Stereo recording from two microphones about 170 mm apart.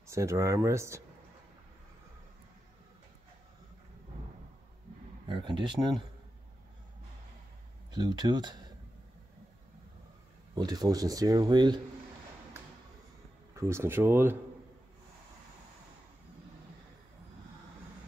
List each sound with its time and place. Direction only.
0.0 s speech: 15° right (ahead or behind)
5.3 s speech: 30° right (ahead or behind)
7.9 s speech: 25° right (ahead or behind)
10.5 s speech: 25° right (ahead or behind)
13.6 s speech: 15° right (ahead or behind)